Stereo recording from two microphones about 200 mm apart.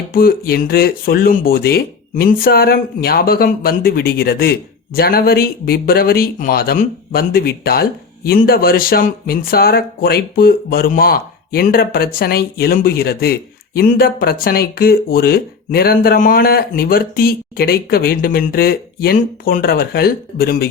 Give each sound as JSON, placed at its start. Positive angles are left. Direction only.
{"t": 0.1, "sound": "speech", "side_deg": 50}